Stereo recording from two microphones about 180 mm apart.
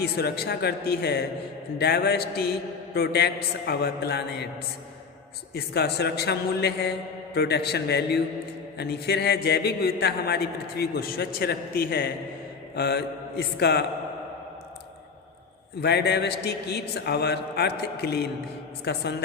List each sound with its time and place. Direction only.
0.0 s a man's voice: 60° left (ahead or behind)
5.5 s a man's voice: 65° left (ahead or behind)
12.7 s mantra: 65° left (ahead or behind)
13.6 s a man's voice: 65° left (ahead or behind)
15.8 s a man's voice: 65° left (ahead or behind)